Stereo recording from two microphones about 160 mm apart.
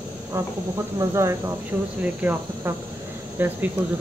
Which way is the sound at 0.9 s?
15° right (ahead or behind).